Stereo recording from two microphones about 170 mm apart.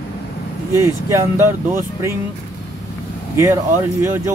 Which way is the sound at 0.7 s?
15° right (ahead or behind).